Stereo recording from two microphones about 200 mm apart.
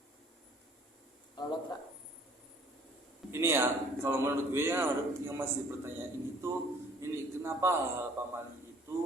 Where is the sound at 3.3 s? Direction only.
10° right (ahead or behind).